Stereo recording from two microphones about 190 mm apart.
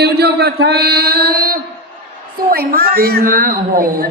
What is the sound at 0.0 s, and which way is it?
A man's voice, 60° right (ahead or behind).